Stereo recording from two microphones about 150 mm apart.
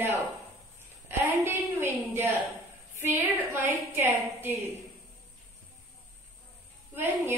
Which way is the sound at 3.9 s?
15° right (ahead or behind).